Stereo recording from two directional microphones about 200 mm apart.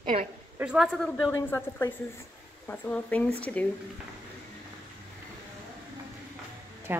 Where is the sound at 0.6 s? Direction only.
5° right (ahead or behind).